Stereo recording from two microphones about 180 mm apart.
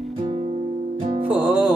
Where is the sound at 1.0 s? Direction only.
30° right (ahead or behind).